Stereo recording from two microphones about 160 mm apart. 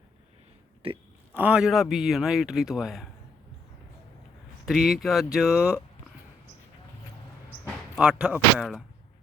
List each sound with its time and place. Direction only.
0.8 s speech: 35° right (ahead or behind)
1.3 s a man's voice: 10° right (ahead or behind)
4.6 s a man's voice: centre (ahead or behind)
7.7 s speech: 5° right (ahead or behind)